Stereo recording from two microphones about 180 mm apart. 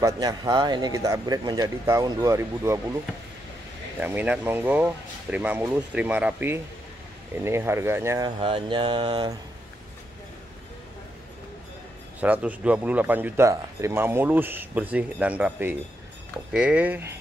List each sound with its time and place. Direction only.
0.0 s speech: 20° right (ahead or behind)
4.0 s a man's voice: 10° right (ahead or behind)
8.4 s speech: 30° right (ahead or behind)
12.2 s a man's voice: 10° right (ahead or behind)